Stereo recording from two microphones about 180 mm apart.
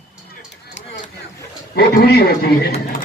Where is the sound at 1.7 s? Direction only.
60° left (ahead or behind).